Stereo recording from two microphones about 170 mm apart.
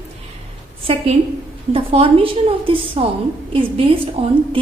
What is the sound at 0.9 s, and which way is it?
A woman's voice, 35° right (ahead or behind).